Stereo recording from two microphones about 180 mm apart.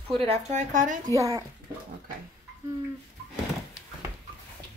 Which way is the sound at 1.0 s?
15° right (ahead or behind).